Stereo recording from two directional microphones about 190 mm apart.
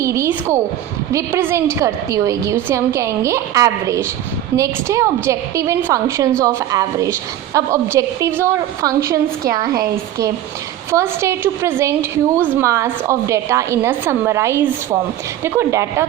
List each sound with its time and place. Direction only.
0.0 s a woman's voice: 15° right (ahead or behind)